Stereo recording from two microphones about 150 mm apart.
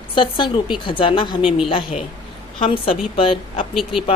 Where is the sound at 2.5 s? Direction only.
40° left (ahead or behind).